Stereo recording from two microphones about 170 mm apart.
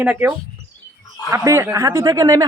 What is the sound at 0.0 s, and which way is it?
A man's voice, 10° right (ahead or behind).